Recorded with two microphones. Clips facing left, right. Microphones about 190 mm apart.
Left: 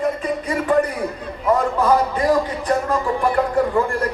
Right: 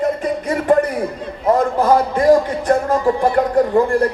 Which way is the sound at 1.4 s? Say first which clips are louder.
Right 3 dB; 45° right (ahead or behind).